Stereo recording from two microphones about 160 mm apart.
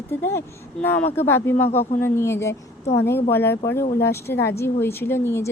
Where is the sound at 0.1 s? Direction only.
15° left (ahead or behind).